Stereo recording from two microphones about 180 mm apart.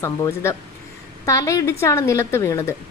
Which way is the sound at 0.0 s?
15° left (ahead or behind).